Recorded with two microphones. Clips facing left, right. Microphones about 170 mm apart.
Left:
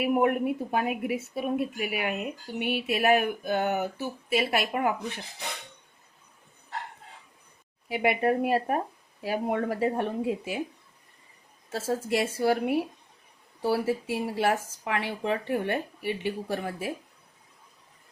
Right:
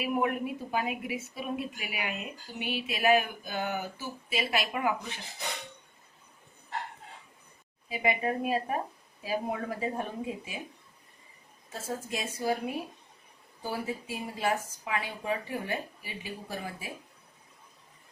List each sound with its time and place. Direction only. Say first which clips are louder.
0.0 s a woman's voice: left 6 dB; 55° left (ahead or behind)
7.9 s speech: left 5 dB; 70° left (ahead or behind)
11.7 s speech: left 8 dB; 75° left (ahead or behind)